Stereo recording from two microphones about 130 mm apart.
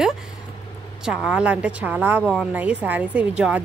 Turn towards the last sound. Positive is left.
turn(degrees=-10)  # may be behind; listen again after turning